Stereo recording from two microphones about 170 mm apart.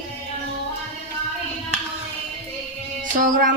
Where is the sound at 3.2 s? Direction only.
55° right (ahead or behind).